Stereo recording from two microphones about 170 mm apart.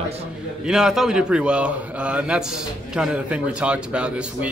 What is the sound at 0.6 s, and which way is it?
A man's voice, 5° right (ahead or behind).